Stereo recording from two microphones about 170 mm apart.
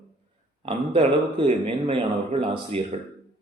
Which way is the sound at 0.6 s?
35° right (ahead or behind).